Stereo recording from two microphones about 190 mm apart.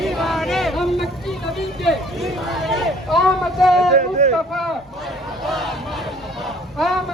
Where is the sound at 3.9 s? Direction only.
40° right (ahead or behind).